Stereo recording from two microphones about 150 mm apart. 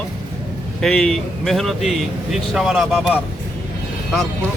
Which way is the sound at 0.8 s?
5° left (ahead or behind).